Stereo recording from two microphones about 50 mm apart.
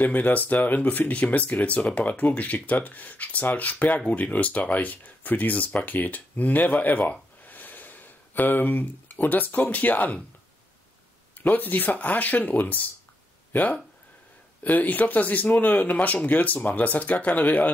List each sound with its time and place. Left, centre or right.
0.0 s speech: left
11.3 s speech: left